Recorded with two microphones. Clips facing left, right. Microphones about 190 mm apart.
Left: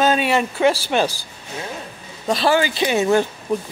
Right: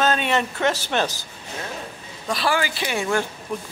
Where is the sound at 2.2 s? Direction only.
25° left (ahead or behind).